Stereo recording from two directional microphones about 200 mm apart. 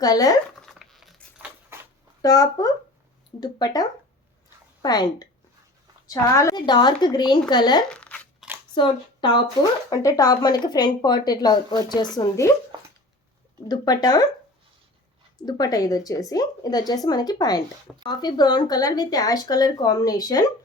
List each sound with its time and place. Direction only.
0.0 s speech: 20° left (ahead or behind)
0.6 s a sound: centre (ahead or behind)
2.2 s speech: 15° left (ahead or behind)
7.9 s a sound: 5° left (ahead or behind)
8.7 s speech: 25° left (ahead or behind)
13.7 s speech: 20° left (ahead or behind)
15.4 s speech: 20° left (ahead or behind)